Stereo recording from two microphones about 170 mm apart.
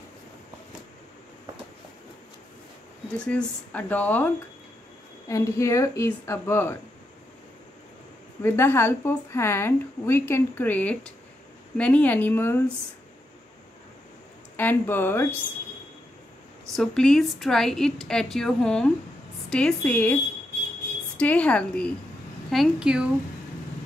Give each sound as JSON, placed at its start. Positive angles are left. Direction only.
{"t": 3.2, "sound": "a woman's voice", "side_deg": 5}
{"t": 5.3, "sound": "a woman's voice", "side_deg": 15}
{"t": 8.4, "sound": "a woman's voice", "side_deg": 15}
{"t": 14.6, "sound": "a woman's voice", "side_deg": 10}
{"t": 16.7, "sound": "a woman's voice", "side_deg": 5}
{"t": 21.2, "sound": "a woman's voice", "side_deg": 10}